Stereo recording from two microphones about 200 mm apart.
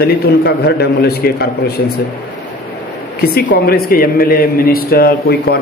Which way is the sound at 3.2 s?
50° left (ahead or behind).